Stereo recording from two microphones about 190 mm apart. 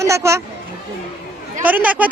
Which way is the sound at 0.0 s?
15° right (ahead or behind).